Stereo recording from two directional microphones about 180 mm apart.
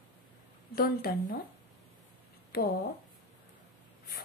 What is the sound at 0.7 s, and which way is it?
Speech, 60° left (ahead or behind).